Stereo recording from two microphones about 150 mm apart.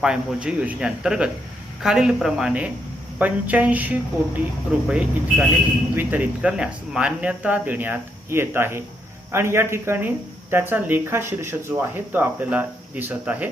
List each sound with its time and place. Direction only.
0.0 s speech: 5° right (ahead or behind)